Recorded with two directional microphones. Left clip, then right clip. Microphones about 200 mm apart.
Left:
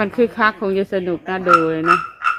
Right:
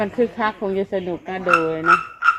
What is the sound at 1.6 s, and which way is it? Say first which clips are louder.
Dishes: left 3 dB; 30° left (ahead or behind).